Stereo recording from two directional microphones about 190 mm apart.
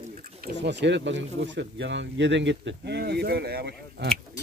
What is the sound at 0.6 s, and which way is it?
Speech, 65° right (ahead or behind).